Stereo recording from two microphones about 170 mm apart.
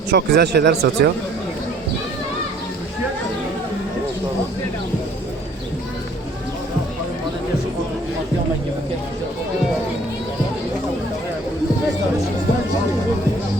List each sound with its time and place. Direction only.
0.1 s a man's voice: 75° right (ahead or behind)